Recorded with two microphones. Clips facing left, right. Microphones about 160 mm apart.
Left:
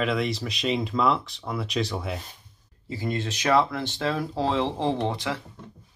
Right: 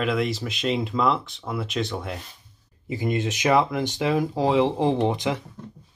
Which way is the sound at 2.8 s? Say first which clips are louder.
Right 4 dB; 15° right (ahead or behind).